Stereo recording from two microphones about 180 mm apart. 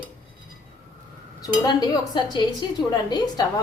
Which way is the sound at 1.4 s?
20° left (ahead or behind).